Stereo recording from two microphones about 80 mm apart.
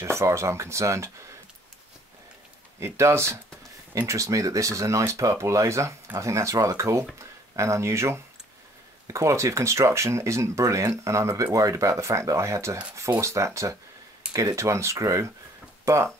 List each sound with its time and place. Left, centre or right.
0.0 s speech: right
2.8 s speech: right